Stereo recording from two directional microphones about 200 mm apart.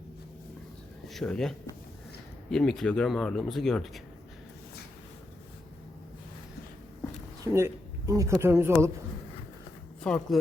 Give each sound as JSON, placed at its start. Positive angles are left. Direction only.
{"t": 1.1, "sound": "speech", "side_deg": 5}
{"t": 7.4, "sound": "a man's voice", "side_deg": -15}
{"t": 10.0, "sound": "speech", "side_deg": 5}